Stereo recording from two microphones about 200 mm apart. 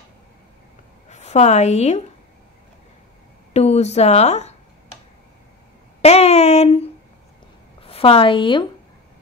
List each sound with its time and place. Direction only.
1.1 s a woman's voice: 35° left (ahead or behind)
3.5 s speech: 35° left (ahead or behind)
6.0 s a woman's voice: 30° left (ahead or behind)